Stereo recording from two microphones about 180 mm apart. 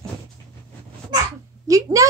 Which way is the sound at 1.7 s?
20° right (ahead or behind).